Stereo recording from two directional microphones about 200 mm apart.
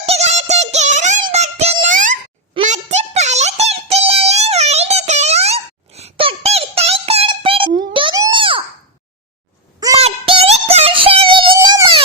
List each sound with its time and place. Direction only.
0.0 s synthetic singing: 30° right (ahead or behind)
2.6 s a sound: 35° right (ahead or behind)
10.0 s music: 30° right (ahead or behind)